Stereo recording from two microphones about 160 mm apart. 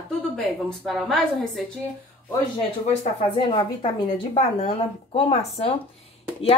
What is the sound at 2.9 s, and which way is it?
Speech, 50° left (ahead or behind).